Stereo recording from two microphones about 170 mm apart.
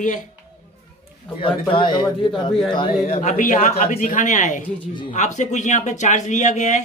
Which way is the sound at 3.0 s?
45° left (ahead or behind).